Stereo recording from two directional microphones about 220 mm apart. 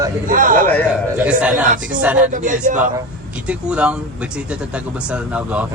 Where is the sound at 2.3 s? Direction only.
35° right (ahead or behind).